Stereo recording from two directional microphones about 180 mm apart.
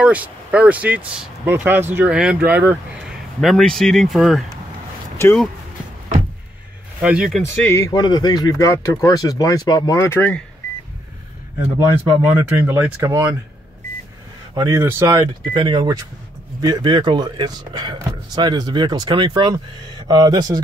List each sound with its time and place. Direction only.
0.0 s speech: 5° right (ahead or behind)
3.3 s speech: centre (ahead or behind)
5.1 s a sound: 15° left (ahead or behind)
7.0 s speech: 5° right (ahead or behind)
7.4 s speech: 15° left (ahead or behind)
12.2 s speech: 10° right (ahead or behind)
14.5 s speech: 20° right (ahead or behind)
15.5 s speech: 25° right (ahead or behind)